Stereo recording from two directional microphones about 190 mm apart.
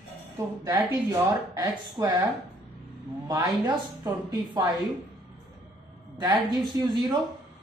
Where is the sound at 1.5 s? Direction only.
20° right (ahead or behind).